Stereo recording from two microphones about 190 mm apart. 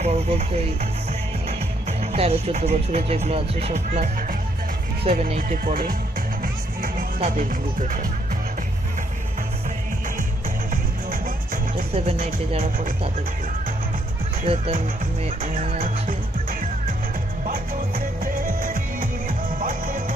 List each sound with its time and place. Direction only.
0.0 s speech: 35° right (ahead or behind)
2.0 s speech: 35° right (ahead or behind); by 6.0 s 50° right (ahead or behind)
6.4 s music: 50° right (ahead or behind)
14.4 s speech: 30° right (ahead or behind)
15.2 s music: 35° right (ahead or behind)